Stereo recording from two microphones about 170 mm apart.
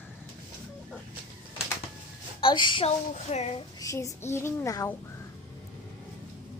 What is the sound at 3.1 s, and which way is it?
Speech, 40° left (ahead or behind).